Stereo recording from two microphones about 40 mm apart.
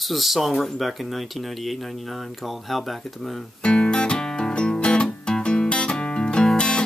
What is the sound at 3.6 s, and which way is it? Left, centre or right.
Music, left.